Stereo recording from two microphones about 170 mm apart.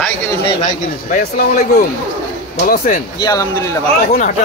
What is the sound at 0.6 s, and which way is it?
Speech, 45° left (ahead or behind).